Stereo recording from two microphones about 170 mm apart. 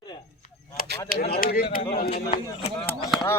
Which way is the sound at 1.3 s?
60° left (ahead or behind).